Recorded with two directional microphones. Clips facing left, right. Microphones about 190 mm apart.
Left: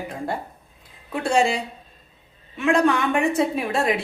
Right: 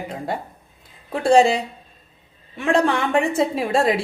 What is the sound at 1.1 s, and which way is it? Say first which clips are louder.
Speech: right 6 dB; 35° right (ahead or behind).